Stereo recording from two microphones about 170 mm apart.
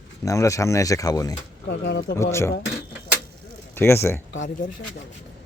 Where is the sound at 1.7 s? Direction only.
90° left.